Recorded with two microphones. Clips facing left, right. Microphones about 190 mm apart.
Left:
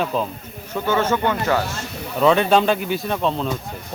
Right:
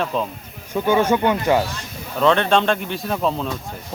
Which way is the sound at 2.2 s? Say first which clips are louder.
Left 1 dB; 5° left (ahead or behind).